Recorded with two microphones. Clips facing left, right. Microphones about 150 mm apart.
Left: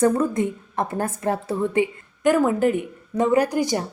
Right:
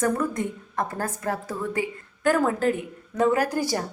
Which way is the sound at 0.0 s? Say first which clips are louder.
Left 5 dB; 25° left (ahead or behind).